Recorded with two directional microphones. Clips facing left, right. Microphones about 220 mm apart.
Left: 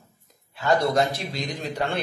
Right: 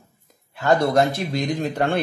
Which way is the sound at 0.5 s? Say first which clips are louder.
Right 3 dB; 55° right (ahead or behind).